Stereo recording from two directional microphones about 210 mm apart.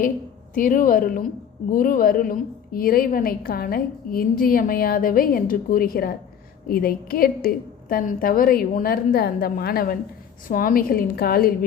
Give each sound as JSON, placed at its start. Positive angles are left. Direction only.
{"t": 0.5, "sound": "a woman's voice", "side_deg": 40}